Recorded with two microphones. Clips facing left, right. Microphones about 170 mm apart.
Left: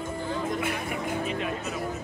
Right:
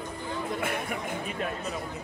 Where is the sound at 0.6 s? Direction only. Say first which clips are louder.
Left 1 dB; 55° right (ahead or behind).